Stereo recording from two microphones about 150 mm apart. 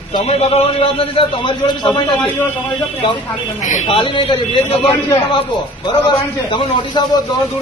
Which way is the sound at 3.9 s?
35° left (ahead or behind).